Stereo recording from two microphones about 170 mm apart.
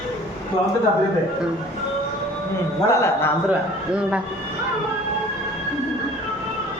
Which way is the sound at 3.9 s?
5° right (ahead or behind).